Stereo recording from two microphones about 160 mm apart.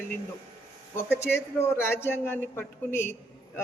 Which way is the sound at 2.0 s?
15° left (ahead or behind).